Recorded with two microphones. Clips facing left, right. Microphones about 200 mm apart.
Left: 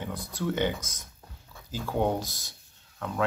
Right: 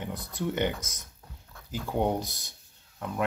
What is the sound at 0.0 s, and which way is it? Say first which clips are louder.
Speech: left 1 dB; 15° right (ahead or behind).